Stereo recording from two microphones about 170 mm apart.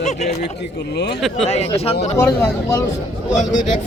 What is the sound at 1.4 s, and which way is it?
Speech, 35° left (ahead or behind).